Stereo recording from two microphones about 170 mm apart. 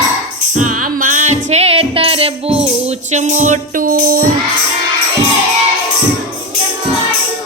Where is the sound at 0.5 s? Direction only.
50° right (ahead or behind).